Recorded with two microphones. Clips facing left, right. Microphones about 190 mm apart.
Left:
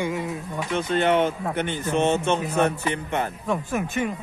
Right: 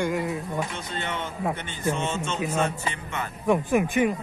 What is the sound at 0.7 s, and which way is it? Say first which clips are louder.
A man's voice: left 12 dB; 65° left (ahead or behind).